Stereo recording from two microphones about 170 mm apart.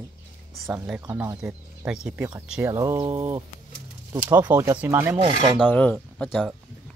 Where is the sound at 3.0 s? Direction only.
35° right (ahead or behind).